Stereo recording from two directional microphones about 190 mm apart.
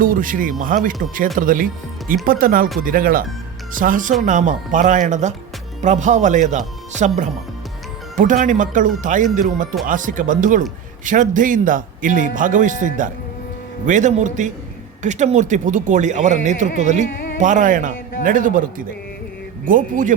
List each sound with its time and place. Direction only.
0.0 s a man's voice: 45° right (ahead or behind)
8.1 s a man's voice: 45° right (ahead or behind)